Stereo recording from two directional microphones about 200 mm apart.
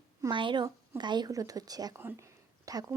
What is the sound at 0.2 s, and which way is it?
A woman's voice, 25° right (ahead or behind).